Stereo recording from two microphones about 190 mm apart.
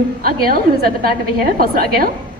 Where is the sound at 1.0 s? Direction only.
50° right (ahead or behind).